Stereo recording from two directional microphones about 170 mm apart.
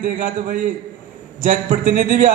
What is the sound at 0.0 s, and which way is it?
A man's voice, 50° right (ahead or behind).